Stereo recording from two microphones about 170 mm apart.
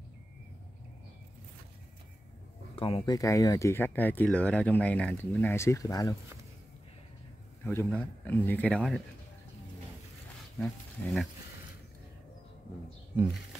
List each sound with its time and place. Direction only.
2.7 s speech: 35° left (ahead or behind)
3.2 s speech: 20° left (ahead or behind)
7.6 s speech: 15° left (ahead or behind)
10.6 s speech: 5° left (ahead or behind)
13.1 s speech: 5° right (ahead or behind)